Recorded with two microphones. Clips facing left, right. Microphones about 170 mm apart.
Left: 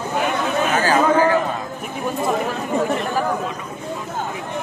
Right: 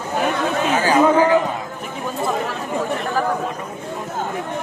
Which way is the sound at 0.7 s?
20° right (ahead or behind).